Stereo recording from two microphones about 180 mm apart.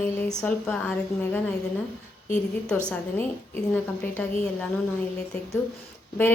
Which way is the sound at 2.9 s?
10° left (ahead or behind).